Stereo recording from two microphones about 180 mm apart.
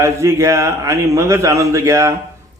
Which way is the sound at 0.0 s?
15° right (ahead or behind).